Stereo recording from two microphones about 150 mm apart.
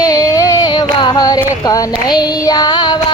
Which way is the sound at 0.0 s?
25° left (ahead or behind).